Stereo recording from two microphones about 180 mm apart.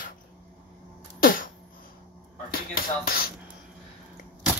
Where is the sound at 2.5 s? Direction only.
55° left (ahead or behind).